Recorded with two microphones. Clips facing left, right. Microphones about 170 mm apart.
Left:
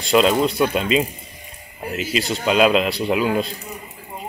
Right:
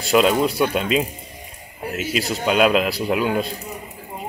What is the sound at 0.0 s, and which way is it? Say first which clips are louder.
A man's voice: even; 5° right (ahead or behind).